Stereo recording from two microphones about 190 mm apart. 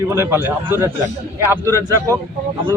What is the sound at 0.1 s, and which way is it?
A man's voice, 10° right (ahead or behind).